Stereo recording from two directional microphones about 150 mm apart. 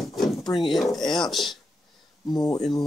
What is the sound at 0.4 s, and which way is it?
Drawer open or close, 30° left (ahead or behind).